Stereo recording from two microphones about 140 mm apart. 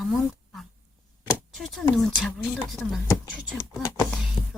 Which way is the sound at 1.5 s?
Centre (ahead or behind).